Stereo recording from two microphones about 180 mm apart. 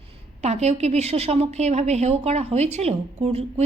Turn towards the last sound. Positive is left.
turn(degrees=-35)  # may be behind; listen again after turning